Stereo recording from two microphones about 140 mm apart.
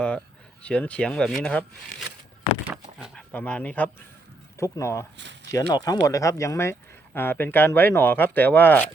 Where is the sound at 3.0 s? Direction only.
5° left (ahead or behind).